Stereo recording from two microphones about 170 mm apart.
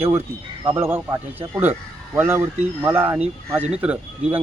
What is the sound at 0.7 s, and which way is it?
Speech, 15° right (ahead or behind).